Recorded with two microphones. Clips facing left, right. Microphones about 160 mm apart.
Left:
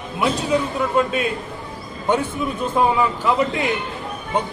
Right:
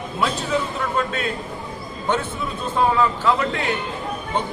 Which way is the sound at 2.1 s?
10° left (ahead or behind).